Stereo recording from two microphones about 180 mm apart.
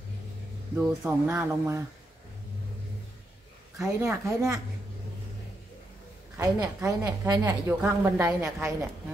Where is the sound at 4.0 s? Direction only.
15° right (ahead or behind).